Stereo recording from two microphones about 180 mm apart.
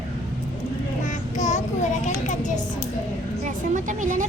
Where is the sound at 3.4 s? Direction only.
45° right (ahead or behind).